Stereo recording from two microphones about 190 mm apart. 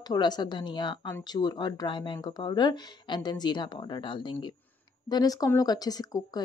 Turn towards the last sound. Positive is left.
turn(degrees=20)  # may be behind; listen again after turning